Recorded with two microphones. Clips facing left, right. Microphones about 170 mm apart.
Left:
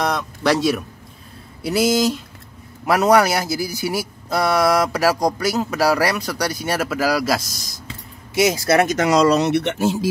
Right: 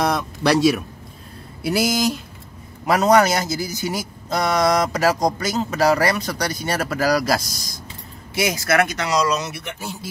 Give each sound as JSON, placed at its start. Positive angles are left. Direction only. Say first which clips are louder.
{"t": 0.0, "sound": "a man's voice", "louder": "right 1 dB", "side_deg": 0}
{"t": 8.4, "sound": "speech", "louder": "left 3 dB", "side_deg": 25}
{"t": 8.8, "sound": "speech", "louder": "left 6 dB", "side_deg": 45}